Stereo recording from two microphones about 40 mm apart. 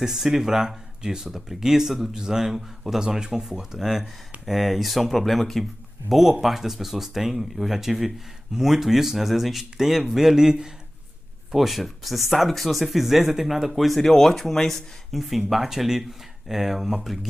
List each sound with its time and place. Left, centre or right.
0.0 s speech: centre
11.5 s speech: centre
15.1 s speech: centre